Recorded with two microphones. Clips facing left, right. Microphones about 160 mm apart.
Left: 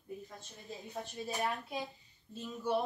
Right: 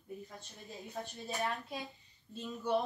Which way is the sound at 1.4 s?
Centre (ahead or behind).